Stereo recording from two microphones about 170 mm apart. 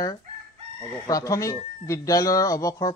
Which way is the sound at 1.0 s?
20° left (ahead or behind).